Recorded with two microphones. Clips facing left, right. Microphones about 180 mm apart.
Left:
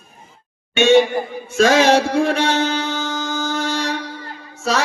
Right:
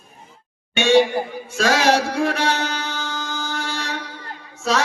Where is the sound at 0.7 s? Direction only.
20° left (ahead or behind).